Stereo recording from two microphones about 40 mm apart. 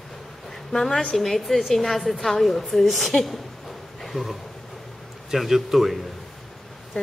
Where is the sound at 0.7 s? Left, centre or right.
Centre.